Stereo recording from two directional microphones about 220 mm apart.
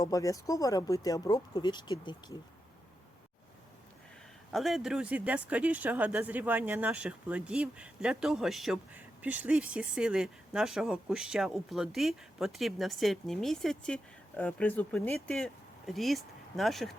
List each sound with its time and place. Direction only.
0.0 s speech: 15° left (ahead or behind)
4.5 s speech: centre (ahead or behind)